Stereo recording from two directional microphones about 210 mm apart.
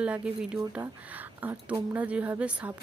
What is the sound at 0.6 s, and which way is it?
Speech, 15° right (ahead or behind).